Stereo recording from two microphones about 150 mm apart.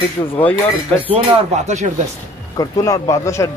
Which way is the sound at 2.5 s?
25° left (ahead or behind).